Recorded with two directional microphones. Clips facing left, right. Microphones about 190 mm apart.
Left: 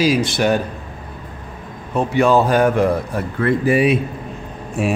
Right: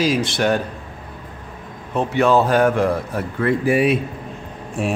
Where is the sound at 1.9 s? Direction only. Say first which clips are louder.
Left 1 dB; 10° left (ahead or behind).